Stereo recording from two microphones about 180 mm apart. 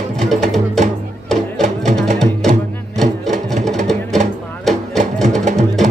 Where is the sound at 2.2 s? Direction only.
Centre (ahead or behind).